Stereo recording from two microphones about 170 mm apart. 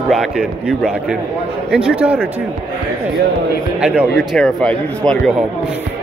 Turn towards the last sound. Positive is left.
turn(degrees=5)  # may be behind; listen again after turning